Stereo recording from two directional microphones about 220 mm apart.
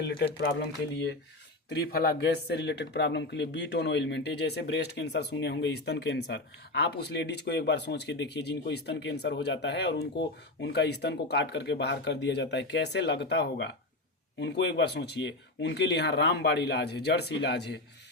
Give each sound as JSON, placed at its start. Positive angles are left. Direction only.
{"t": 0.1, "sound": "speech", "side_deg": 50}